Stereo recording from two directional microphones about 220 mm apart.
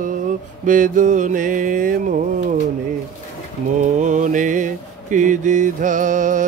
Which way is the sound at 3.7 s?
35° right (ahead or behind).